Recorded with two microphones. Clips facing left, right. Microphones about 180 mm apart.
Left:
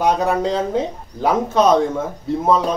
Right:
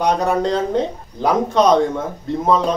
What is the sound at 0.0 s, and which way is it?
A man's voice, 5° left (ahead or behind).